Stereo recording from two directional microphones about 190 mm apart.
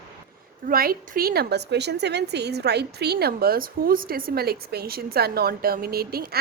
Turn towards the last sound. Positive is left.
turn(degrees=-55)  # may be behind; listen again after turning